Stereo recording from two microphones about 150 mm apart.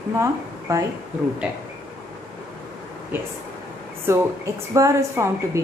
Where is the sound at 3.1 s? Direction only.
10° right (ahead or behind).